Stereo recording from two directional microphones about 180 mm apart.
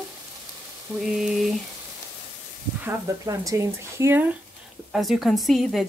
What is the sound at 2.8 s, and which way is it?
Speech, 20° right (ahead or behind).